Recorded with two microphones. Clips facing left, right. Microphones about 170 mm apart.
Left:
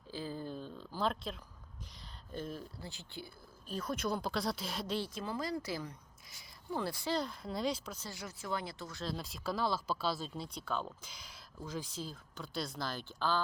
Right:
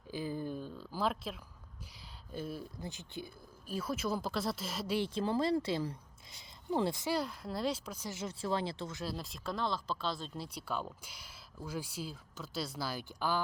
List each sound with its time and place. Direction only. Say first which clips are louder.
0.1 s a sound: right 3 dB; 15° right (ahead or behind)
2.3 s speech: right 1 dB; 10° right (ahead or behind)
3.7 s speech: right 1 dB; 5° right (ahead or behind)
4.9 s speech: right 10 dB; 25° right (ahead or behind)
7.1 s speech: right 1 dB; 5° right (ahead or behind); by 9.0 s 30° right (ahead or behind)
9.0 s speech: left 4 dB; centre (ahead or behind)